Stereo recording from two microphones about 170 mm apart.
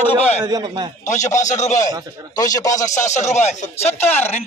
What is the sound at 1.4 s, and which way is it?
Speech, 45° left (ahead or behind).